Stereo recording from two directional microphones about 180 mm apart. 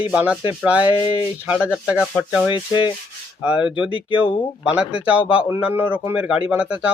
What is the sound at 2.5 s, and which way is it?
Speech, 25° left (ahead or behind).